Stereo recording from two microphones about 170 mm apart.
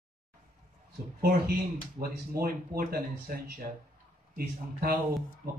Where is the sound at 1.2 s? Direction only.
65° right (ahead or behind).